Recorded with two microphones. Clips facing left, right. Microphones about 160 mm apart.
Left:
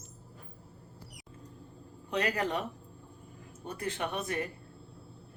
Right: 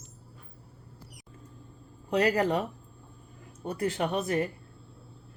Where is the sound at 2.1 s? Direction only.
35° right (ahead or behind).